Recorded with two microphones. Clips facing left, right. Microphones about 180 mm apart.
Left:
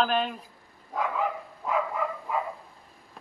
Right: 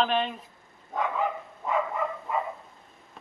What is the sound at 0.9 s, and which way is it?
Dog, centre (ahead or behind).